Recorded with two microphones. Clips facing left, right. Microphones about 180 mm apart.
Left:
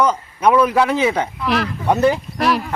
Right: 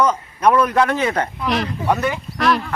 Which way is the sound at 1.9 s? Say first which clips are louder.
Left 5 dB; 30° left (ahead or behind).